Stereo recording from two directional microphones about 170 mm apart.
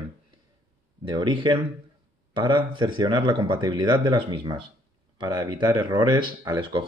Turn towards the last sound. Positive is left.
turn(degrees=-30)  # may be behind; listen again after turning